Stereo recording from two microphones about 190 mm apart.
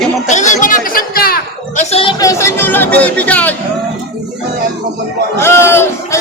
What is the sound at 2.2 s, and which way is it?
Speech, 15° left (ahead or behind).